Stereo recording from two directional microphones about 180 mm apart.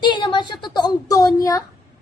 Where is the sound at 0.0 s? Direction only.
25° left (ahead or behind).